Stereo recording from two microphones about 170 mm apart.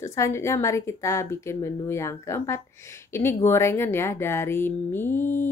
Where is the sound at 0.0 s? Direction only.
15° left (ahead or behind).